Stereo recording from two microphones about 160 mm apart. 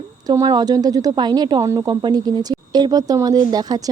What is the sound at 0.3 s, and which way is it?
Speech, 25° right (ahead or behind).